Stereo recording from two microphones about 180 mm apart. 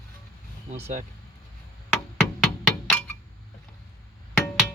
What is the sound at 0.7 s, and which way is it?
Speech, 40° right (ahead or behind).